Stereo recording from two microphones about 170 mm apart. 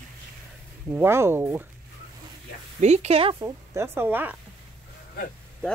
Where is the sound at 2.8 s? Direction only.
40° right (ahead or behind).